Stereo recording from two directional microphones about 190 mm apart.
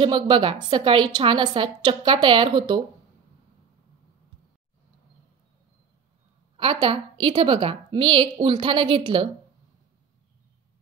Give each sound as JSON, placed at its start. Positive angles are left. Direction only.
{"t": 0.0, "sound": "a woman's voice", "side_deg": -25}
{"t": 6.5, "sound": "a woman's voice", "side_deg": -25}